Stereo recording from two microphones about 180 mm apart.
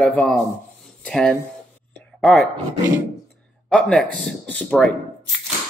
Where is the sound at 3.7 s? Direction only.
5° left (ahead or behind).